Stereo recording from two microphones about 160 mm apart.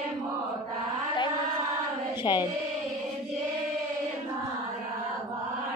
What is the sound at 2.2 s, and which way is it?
Speech, 25° left (ahead or behind).